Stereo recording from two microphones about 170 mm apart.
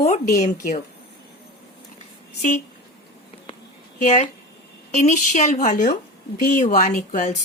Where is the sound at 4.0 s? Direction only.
45° left (ahead or behind).